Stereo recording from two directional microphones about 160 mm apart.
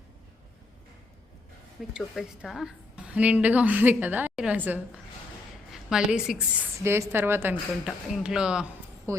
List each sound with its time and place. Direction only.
1.9 s a woman's voice: 5° right (ahead or behind)
6.7 s a woman's voice: 15° right (ahead or behind)
7.9 s a woman's voice: 5° right (ahead or behind)
9.1 s a sound: 20° right (ahead or behind)